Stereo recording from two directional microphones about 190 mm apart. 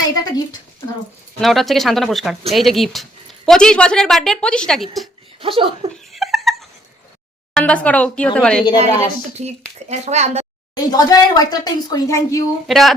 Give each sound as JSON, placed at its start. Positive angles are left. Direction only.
{"t": 0.2, "sound": "speech", "side_deg": 20}
{"t": 1.4, "sound": "speech", "side_deg": 0}
{"t": 5.4, "sound": "speech", "side_deg": -30}
{"t": 5.9, "sound": "a sound", "side_deg": 0}
{"t": 7.5, "sound": "speech", "side_deg": 5}
{"t": 9.4, "sound": "speech", "side_deg": -35}
{"t": 10.8, "sound": "speech", "side_deg": 20}
{"t": 12.6, "sound": "speech", "side_deg": 0}